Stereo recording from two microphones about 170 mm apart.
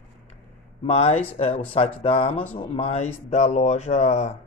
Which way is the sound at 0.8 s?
35° left (ahead or behind).